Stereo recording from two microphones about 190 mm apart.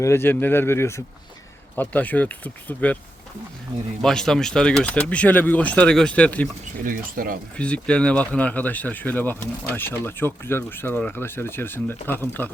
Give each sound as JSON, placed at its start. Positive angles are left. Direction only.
{"t": 0.0, "sound": "speech", "side_deg": 10}
{"t": 4.0, "sound": "speech", "side_deg": 5}
{"t": 6.8, "sound": "speech", "side_deg": -45}
{"t": 7.5, "sound": "speech", "side_deg": 5}